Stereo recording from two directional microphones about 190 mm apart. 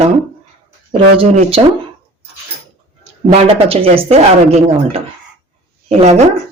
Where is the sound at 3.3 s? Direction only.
30° right (ahead or behind).